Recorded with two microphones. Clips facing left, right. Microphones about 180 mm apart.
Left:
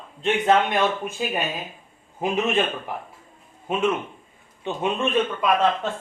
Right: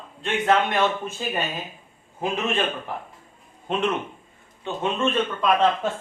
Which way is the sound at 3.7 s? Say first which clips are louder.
Left 1 dB; 10° left (ahead or behind).